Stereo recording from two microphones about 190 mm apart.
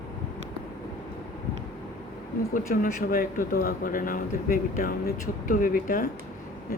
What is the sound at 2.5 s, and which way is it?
Speech, 50° left (ahead or behind).